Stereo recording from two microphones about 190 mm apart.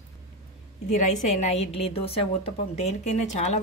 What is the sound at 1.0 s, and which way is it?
A woman's voice, 40° left (ahead or behind).